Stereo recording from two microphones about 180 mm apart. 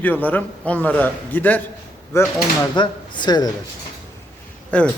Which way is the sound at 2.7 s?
25° left (ahead or behind).